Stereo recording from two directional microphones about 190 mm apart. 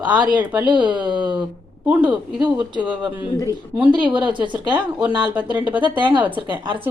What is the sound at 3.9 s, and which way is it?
Speech, 25° right (ahead or behind).